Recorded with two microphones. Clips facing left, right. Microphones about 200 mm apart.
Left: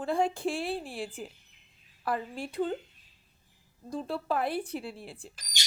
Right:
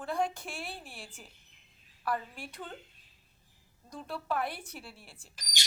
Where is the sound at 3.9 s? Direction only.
30° left (ahead or behind).